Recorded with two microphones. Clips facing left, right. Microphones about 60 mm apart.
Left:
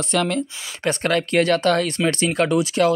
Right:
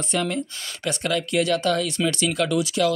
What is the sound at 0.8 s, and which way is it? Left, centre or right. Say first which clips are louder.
Speech: left 4 dB; left.